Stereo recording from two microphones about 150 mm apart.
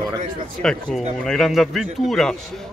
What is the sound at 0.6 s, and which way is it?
Speech, 5° left (ahead or behind).